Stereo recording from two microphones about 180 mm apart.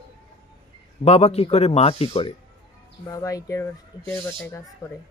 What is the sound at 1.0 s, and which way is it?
Speech, 35° left (ahead or behind).